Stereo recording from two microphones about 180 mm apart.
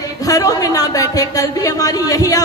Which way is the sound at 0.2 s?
20° left (ahead or behind).